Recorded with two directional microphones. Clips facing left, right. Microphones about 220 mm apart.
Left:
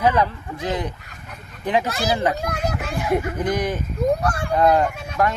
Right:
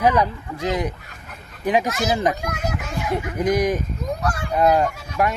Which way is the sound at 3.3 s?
10° right (ahead or behind).